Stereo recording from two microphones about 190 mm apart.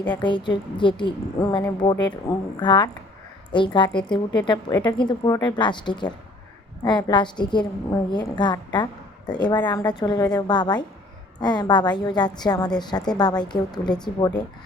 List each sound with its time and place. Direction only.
0.0 s a woman's voice: 25° left (ahead or behind)